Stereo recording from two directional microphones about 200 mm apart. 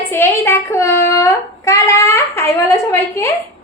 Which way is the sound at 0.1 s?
10° left (ahead or behind).